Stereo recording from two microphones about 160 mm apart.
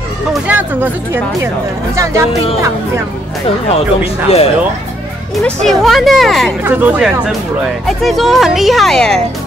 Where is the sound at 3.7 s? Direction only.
40° left (ahead or behind).